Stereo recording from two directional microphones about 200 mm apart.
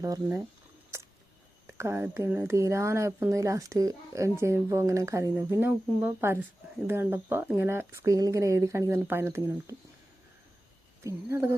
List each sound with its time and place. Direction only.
0.0 s speech: 15° right (ahead or behind)
0.9 s a sound: 15° right (ahead or behind)
1.6 s speech: 10° right (ahead or behind)
11.0 s speech: 15° right (ahead or behind)